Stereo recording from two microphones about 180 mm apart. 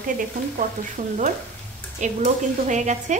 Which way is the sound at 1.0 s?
40° right (ahead or behind).